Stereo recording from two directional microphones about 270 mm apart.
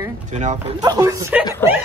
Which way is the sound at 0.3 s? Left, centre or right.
Right.